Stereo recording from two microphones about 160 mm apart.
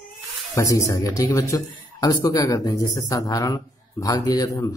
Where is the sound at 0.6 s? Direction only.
20° left (ahead or behind).